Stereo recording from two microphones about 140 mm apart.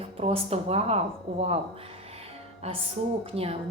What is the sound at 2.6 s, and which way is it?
Speech, 50° right (ahead or behind).